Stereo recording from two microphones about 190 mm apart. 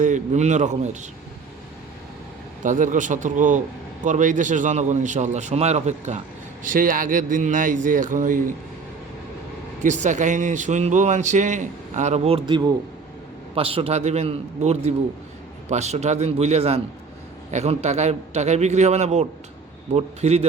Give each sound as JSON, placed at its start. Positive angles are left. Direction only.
{"t": 0.0, "sound": "speech", "side_deg": -40}
{"t": 2.6, "sound": "a man's voice", "side_deg": -40}
{"t": 9.8, "sound": "speech", "side_deg": -40}